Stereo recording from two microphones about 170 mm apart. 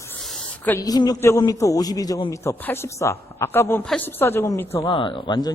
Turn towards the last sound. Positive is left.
turn(degrees=25)  # may be behind; listen again after turning